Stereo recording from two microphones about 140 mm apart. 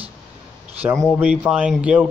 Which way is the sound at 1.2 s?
10° right (ahead or behind).